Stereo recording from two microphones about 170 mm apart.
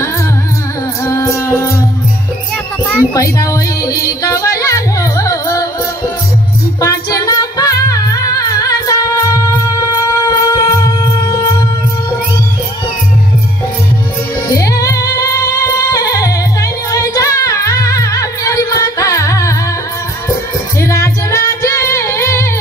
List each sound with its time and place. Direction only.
1.0 s music: 15° left (ahead or behind)
3.2 s music: 20° left (ahead or behind)
6.8 s music: 20° left (ahead or behind)
14.5 s music: 20° left (ahead or behind)
20.8 s music: 20° left (ahead or behind)